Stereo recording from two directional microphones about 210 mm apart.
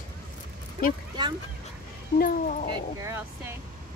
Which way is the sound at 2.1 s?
40° left (ahead or behind).